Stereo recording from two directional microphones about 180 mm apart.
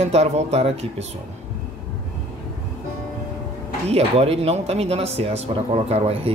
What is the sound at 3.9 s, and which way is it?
Speech, 35° right (ahead or behind).